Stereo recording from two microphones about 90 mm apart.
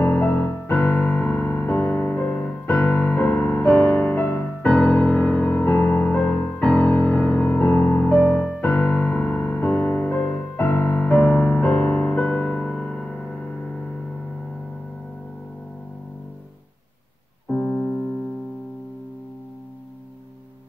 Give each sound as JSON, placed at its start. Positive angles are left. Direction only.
{"t": 0.0, "sound": "music", "side_deg": 20}
{"t": 2.7, "sound": "music", "side_deg": 5}
{"t": 3.0, "sound": "music", "side_deg": 20}
{"t": 4.6, "sound": "music", "side_deg": 5}
{"t": 17.5, "sound": "keyboard", "side_deg": 15}